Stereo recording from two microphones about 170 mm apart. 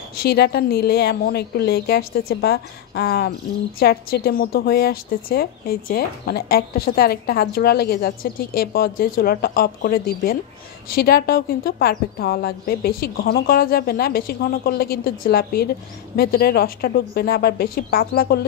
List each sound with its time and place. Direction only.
0.1 s a woman's voice: 65° left (ahead or behind)